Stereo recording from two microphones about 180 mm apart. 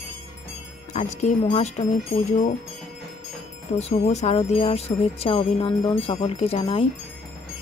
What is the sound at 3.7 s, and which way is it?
Speech, 40° left (ahead or behind).